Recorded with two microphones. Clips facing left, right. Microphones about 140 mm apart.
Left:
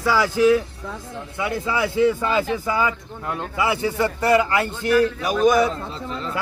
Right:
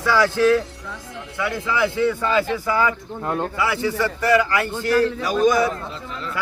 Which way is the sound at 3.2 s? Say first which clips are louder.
Right 5 dB; 30° right (ahead or behind).